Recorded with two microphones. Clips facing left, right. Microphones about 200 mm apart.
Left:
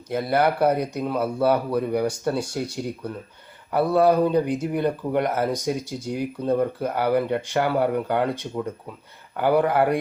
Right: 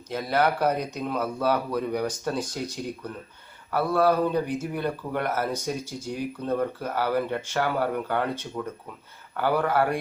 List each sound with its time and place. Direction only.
0.1 s speech: 10° left (ahead or behind)